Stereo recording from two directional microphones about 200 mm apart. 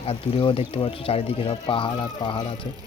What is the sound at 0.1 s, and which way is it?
Speech, 25° left (ahead or behind).